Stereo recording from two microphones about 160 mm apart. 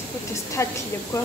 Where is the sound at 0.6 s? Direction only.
20° left (ahead or behind).